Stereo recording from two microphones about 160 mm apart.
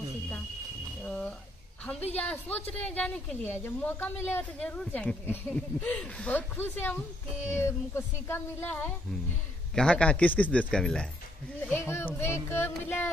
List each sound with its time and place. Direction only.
1.0 s a sound: 5° left (ahead or behind)
2.1 s a woman's voice: 10° left (ahead or behind)
11.6 s a woman's voice: 15° left (ahead or behind)